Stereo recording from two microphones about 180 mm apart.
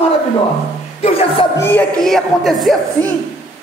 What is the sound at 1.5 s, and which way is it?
Speech, 15° left (ahead or behind).